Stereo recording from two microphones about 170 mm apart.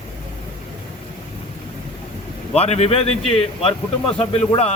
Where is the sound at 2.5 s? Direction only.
40° left (ahead or behind).